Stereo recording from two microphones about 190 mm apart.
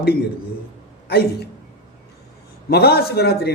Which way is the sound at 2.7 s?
55° left (ahead or behind).